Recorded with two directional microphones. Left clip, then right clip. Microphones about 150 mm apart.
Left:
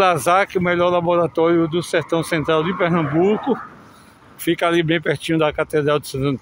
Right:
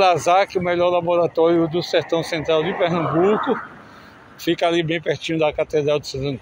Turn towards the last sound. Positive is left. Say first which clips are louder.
# left 2 dB
turn(degrees=50)  # may be behind; listen again after turning